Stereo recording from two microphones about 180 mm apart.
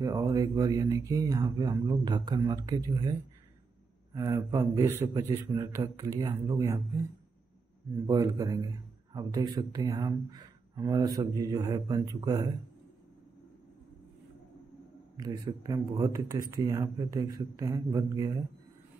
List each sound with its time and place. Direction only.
0.0 s a man's voice: 20° right (ahead or behind)
8.1 s a man's voice: 20° right (ahead or behind)
15.1 s a man's voice: 20° right (ahead or behind)